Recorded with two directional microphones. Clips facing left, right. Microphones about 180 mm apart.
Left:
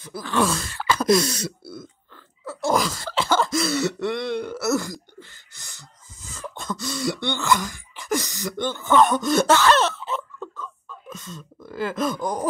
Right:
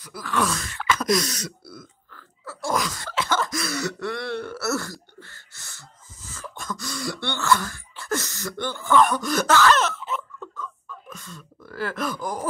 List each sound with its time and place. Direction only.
0.0 s throat clearing: 25° left (ahead or behind)